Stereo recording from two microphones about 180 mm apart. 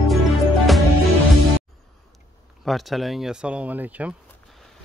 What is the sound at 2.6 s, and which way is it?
Speech, centre (ahead or behind).